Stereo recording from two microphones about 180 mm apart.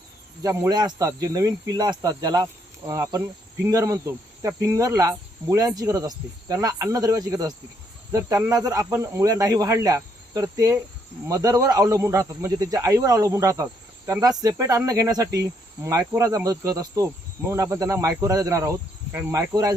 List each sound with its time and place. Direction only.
0.4 s speech: 20° right (ahead or behind)